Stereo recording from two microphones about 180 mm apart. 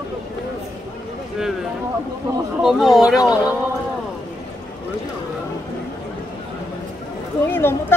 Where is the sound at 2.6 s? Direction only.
Centre (ahead or behind).